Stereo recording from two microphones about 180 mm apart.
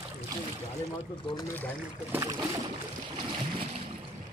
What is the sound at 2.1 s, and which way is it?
Speech, 15° right (ahead or behind).